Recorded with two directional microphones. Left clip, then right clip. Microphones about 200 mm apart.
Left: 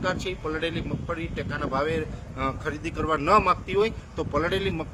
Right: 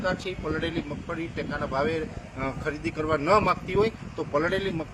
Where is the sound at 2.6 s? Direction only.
30° left (ahead or behind).